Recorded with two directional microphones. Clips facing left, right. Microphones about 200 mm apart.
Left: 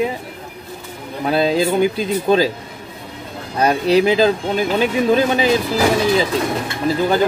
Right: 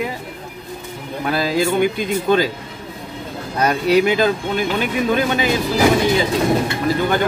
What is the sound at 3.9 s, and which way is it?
A man's voice, 30° left (ahead or behind).